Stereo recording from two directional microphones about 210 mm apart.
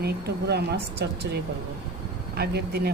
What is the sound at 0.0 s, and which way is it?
Speech, 50° right (ahead or behind).